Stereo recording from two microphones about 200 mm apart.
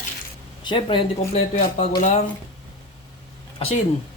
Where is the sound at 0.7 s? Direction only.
25° left (ahead or behind).